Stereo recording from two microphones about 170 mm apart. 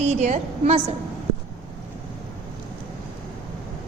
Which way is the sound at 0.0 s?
40° right (ahead or behind).